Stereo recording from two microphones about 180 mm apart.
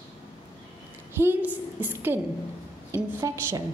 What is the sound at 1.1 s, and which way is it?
A woman's voice, 10° right (ahead or behind).